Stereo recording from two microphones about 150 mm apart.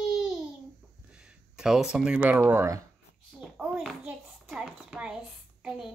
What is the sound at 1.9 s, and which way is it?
Speech, 5° right (ahead or behind).